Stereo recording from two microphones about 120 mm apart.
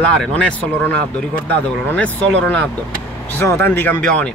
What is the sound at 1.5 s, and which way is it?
Speech, 10° left (ahead or behind).